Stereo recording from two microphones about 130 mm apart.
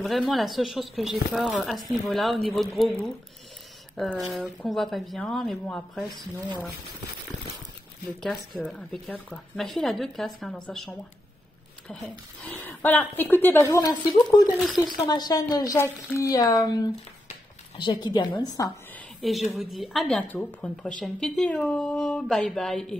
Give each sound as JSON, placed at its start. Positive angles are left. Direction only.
{"t": 0.3, "sound": "speech", "side_deg": 0}
{"t": 8.2, "sound": "speech", "side_deg": 5}
{"t": 11.9, "sound": "speech", "side_deg": 5}
{"t": 12.4, "sound": "a woman's voice", "side_deg": 15}
{"t": 14.6, "sound": "speech", "side_deg": 0}
{"t": 15.0, "sound": "a woman's voice", "side_deg": 30}
{"t": 17.7, "sound": "a woman's voice", "side_deg": 35}
{"t": 19.5, "sound": "speech", "side_deg": 0}